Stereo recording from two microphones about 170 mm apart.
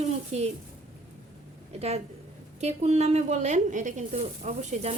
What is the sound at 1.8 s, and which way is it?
A woman's voice, 35° right (ahead or behind).